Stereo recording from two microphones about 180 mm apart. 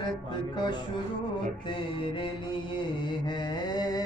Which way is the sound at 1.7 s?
30° left (ahead or behind).